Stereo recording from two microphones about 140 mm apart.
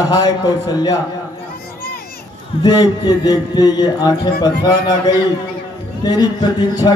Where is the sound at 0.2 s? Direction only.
30° left (ahead or behind).